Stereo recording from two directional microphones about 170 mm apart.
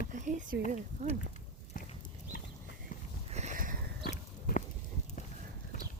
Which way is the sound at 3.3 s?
45° right (ahead or behind).